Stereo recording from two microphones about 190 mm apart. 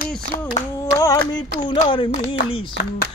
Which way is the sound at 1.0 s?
20° left (ahead or behind).